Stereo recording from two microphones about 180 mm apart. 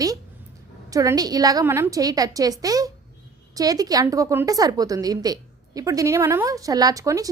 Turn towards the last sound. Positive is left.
turn(degrees=-20)  # may be behind; listen again after turning